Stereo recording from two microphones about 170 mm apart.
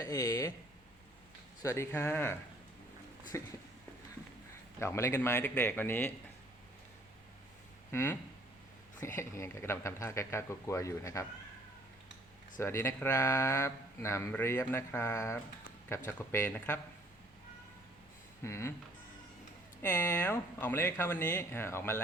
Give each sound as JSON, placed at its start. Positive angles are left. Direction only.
{"t": 0.0, "sound": "speech", "side_deg": 20}
{"t": 1.6, "sound": "speech", "side_deg": 15}
{"t": 4.8, "sound": "speech", "side_deg": 15}
{"t": 7.9, "sound": "speech", "side_deg": 15}
{"t": 12.5, "sound": "speech", "side_deg": 15}
{"t": 18.4, "sound": "speech", "side_deg": 15}
{"t": 19.8, "sound": "speech", "side_deg": 10}